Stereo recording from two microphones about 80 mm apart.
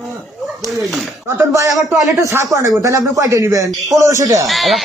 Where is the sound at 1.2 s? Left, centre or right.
Right.